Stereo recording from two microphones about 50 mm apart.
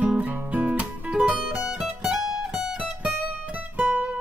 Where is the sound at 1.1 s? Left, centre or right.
Centre.